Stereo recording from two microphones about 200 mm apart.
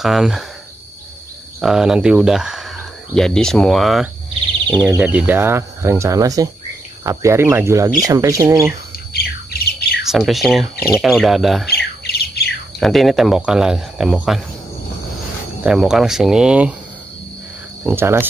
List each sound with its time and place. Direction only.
0.0 s speech: centre (ahead or behind)
1.6 s speech: 5° right (ahead or behind)
9.1 s bird: 50° left (ahead or behind)
10.0 s speech: centre (ahead or behind)
11.7 s bird: 50° left (ahead or behind)
12.7 s speech: centre (ahead or behind)
15.6 s speech: 5° right (ahead or behind)
17.8 s speech: 10° right (ahead or behind)